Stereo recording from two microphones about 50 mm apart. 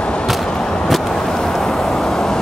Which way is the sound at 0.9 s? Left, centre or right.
Centre.